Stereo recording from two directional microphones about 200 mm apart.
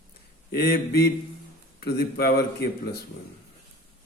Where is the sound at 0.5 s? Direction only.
50° left (ahead or behind).